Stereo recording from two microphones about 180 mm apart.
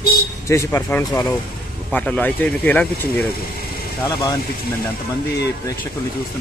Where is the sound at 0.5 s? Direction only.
15° left (ahead or behind).